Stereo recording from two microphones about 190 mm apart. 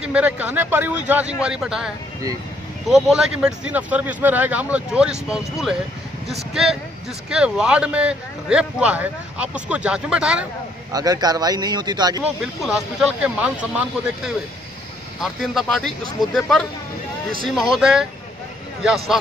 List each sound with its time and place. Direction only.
0.0 s speech: 5° right (ahead or behind)
2.9 s speech: 5° right (ahead or behind)
10.9 s speech: 20° right (ahead or behind)
12.2 s speech: 5° right (ahead or behind)